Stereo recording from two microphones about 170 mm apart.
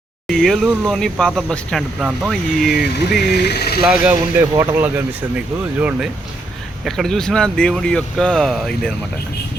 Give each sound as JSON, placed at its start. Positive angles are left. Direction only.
{"t": 0.3, "sound": "speech", "side_deg": 0}
{"t": 3.2, "sound": "speech", "side_deg": 75}
{"t": 3.8, "sound": "speech", "side_deg": -10}
{"t": 6.8, "sound": "speech", "side_deg": 0}